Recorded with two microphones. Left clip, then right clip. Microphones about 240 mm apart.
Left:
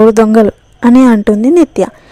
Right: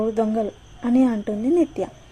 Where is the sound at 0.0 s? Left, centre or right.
Left.